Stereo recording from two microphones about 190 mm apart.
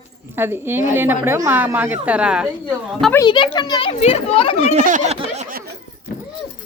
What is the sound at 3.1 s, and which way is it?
A child's voice, 20° left (ahead or behind).